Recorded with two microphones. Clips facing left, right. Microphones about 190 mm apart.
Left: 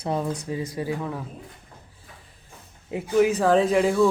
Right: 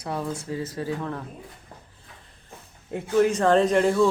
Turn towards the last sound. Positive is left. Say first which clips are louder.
# even
turn(degrees=5)  # may be behind; listen again after turning